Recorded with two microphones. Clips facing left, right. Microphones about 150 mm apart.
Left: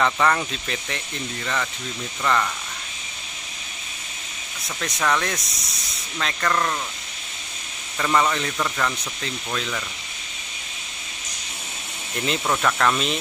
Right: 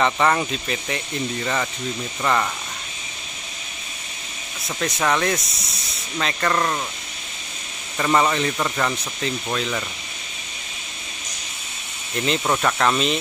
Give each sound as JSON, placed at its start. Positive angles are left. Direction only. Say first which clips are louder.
{"t": 0.0, "sound": "speech", "louder": "right 2 dB", "side_deg": -10}
{"t": 5.0, "sound": "speech", "louder": "right 2 dB", "side_deg": -15}
{"t": 5.3, "sound": "speech", "louder": "right 5 dB", "side_deg": 0}
{"t": 8.0, "sound": "speech", "louder": "right 2 dB", "side_deg": -15}
{"t": 12.4, "sound": "speech", "louder": "even", "side_deg": -10}